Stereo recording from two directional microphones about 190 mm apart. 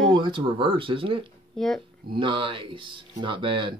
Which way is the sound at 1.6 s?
Centre (ahead or behind).